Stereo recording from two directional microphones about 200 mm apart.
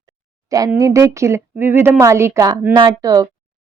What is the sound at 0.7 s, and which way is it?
A woman's voice, 15° right (ahead or behind).